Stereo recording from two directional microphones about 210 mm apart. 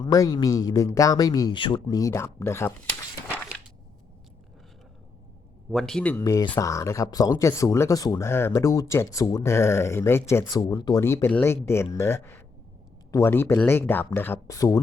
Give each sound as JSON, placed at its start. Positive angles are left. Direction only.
{"t": 0.0, "sound": "speech", "side_deg": 15}
{"t": 3.2, "sound": "a sound", "side_deg": 10}
{"t": 5.7, "sound": "speech", "side_deg": 0}